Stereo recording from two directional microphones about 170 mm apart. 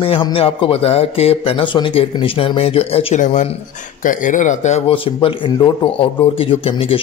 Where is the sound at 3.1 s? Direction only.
45° left (ahead or behind).